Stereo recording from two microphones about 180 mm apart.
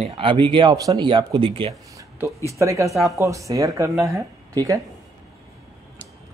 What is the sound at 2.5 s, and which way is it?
A man's voice, 15° right (ahead or behind).